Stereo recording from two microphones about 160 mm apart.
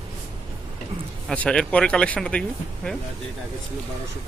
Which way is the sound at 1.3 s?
5° left (ahead or behind).